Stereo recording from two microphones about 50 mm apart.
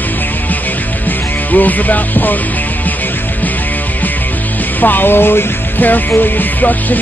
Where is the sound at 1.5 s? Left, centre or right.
Left.